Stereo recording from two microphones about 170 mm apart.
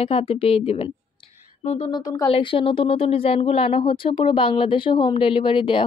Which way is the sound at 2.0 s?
25° left (ahead or behind).